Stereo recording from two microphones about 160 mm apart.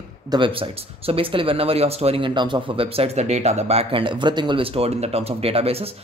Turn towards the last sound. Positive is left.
turn(degrees=-35)  # may be behind; listen again after turning